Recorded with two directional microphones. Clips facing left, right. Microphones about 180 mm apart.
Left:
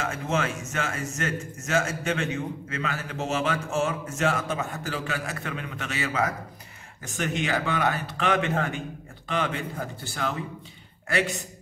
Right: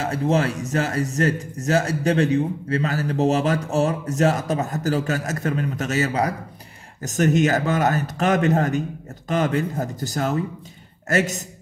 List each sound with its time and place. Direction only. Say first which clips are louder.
0.0 s a man's voice: right 7 dB; 35° right (ahead or behind)